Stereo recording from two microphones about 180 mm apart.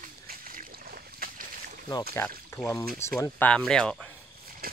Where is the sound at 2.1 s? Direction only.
15° left (ahead or behind).